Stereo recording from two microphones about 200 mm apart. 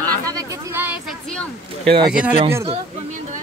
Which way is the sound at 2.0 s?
5° right (ahead or behind).